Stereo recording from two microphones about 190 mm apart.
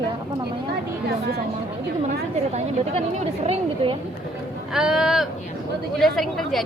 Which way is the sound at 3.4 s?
35° right (ahead or behind).